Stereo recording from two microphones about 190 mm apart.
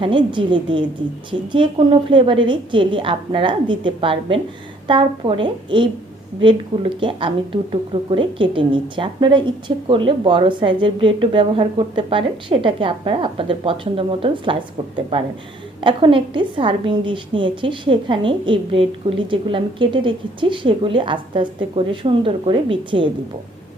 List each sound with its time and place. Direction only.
0.0 s a woman's voice: 25° right (ahead or behind)
15.8 s a woman's voice: 25° right (ahead or behind)